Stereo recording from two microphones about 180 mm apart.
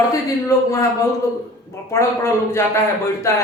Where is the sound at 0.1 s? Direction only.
15° left (ahead or behind).